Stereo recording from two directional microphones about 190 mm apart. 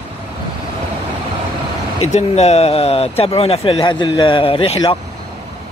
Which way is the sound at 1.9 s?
35° left (ahead or behind).